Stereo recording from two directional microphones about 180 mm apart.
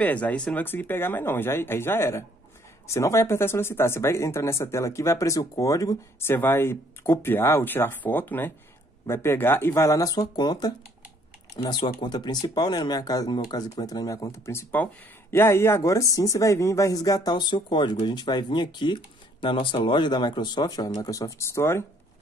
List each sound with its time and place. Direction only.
0.0 s speech: 10° left (ahead or behind)